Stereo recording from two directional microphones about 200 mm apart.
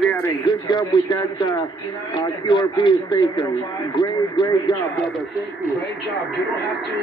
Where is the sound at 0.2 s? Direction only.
20° left (ahead or behind).